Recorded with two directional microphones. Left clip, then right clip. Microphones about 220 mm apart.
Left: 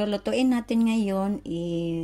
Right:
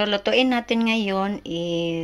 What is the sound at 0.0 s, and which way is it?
Speech, 10° left (ahead or behind).